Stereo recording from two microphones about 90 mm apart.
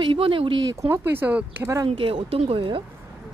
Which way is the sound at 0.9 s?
25° right (ahead or behind).